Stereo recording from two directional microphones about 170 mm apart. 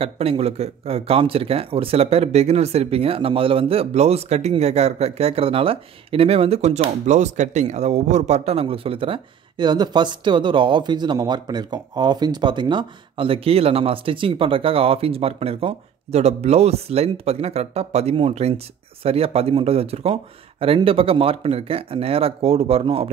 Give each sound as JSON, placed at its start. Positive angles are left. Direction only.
{"t": 0.0, "sound": "speech", "side_deg": -35}